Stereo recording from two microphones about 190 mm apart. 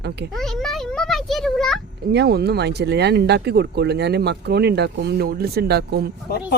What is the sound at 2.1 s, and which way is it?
Speech, 55° right (ahead or behind).